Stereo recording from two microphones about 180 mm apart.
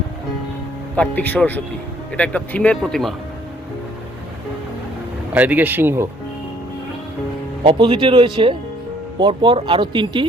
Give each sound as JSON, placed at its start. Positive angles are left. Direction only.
{"t": 0.9, "sound": "speech", "side_deg": 10}
{"t": 5.3, "sound": "speech", "side_deg": -10}
{"t": 7.6, "sound": "speech", "side_deg": -30}